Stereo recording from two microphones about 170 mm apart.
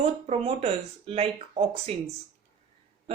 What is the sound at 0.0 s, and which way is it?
Speech, 35° right (ahead or behind).